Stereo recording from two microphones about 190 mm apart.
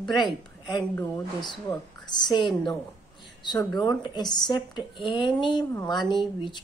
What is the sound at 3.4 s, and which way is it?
Speech, 20° left (ahead or behind).